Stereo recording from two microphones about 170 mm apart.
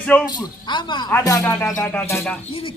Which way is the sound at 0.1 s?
10° left (ahead or behind).